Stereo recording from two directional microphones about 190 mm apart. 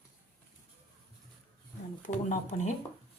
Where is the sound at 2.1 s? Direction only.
35° left (ahead or behind).